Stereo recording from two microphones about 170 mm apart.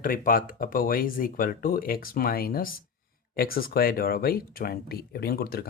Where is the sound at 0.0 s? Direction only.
55° left (ahead or behind).